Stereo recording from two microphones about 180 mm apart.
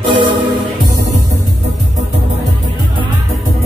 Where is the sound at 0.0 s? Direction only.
25° right (ahead or behind).